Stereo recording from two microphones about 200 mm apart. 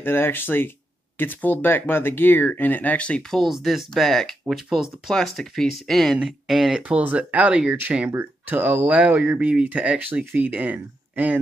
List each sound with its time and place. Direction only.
0.0 s speech: 10° left (ahead or behind); by 11.3 s 10° right (ahead or behind)